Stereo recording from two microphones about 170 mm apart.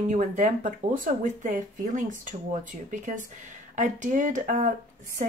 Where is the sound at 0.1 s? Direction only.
45° right (ahead or behind).